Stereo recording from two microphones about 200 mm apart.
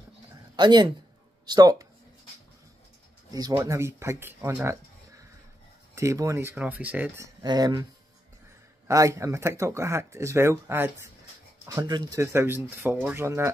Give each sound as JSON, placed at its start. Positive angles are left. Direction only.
{"t": 0.6, "sound": "speech", "side_deg": -20}
{"t": 3.3, "sound": "speech", "side_deg": -20}
{"t": 5.9, "sound": "speech", "side_deg": -15}
{"t": 7.4, "sound": "speech", "side_deg": -20}
{"t": 8.8, "sound": "speech", "side_deg": -15}